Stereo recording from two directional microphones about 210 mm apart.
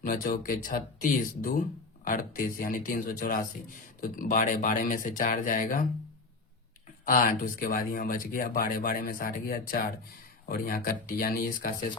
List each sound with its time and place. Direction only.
0.0 s speech: 45° left (ahead or behind)
7.0 s speech: 40° left (ahead or behind)